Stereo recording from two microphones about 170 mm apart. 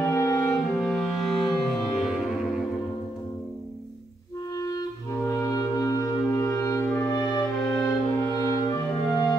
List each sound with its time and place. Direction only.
0.0 s music: 15° left (ahead or behind); by 2.1 s centre (ahead or behind)
4.6 s clarinet: 20° left (ahead or behind)
7.3 s music: 10° left (ahead or behind)
8.5 s music: 20° left (ahead or behind)
9.1 s music: centre (ahead or behind)